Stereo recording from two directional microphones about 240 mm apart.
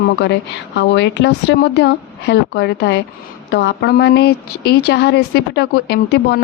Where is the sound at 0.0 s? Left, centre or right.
Left.